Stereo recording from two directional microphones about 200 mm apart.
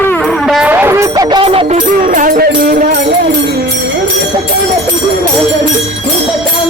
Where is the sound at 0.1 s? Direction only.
Centre (ahead or behind); by 1.8 s 30° right (ahead or behind).